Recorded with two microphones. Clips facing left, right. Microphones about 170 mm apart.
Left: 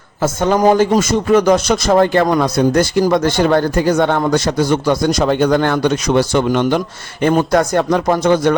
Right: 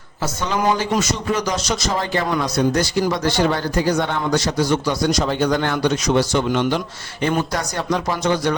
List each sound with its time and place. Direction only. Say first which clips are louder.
0.2 s speech: left 8 dB; 50° left (ahead or behind)